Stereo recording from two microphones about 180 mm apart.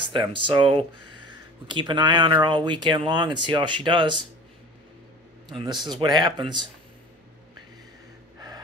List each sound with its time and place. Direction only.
0.0 s speech: 30° right (ahead or behind)
5.5 s speech: 25° right (ahead or behind)